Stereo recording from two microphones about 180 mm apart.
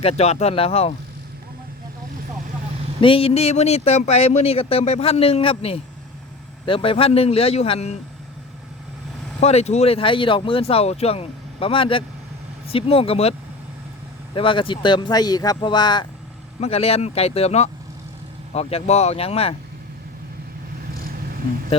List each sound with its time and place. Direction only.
0.0 s speech: 35° left (ahead or behind)
3.0 s speech: 30° left (ahead or behind)
9.4 s speech: 35° left (ahead or behind)
14.3 s speech: 30° left (ahead or behind)
16.6 s speech: 35° left (ahead or behind)